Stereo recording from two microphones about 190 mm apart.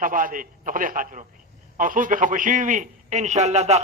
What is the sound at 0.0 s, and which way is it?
A man's voice, 45° right (ahead or behind).